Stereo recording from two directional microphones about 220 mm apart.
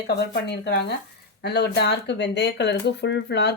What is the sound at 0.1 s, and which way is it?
Speech, 50° left (ahead or behind).